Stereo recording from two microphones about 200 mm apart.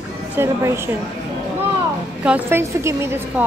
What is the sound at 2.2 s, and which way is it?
A woman's voice, 10° right (ahead or behind).